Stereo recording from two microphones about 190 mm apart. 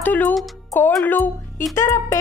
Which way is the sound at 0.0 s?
10° left (ahead or behind).